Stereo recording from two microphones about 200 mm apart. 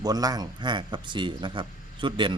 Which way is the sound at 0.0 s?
20° right (ahead or behind).